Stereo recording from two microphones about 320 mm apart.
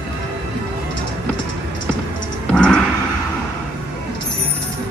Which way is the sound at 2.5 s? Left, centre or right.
Centre.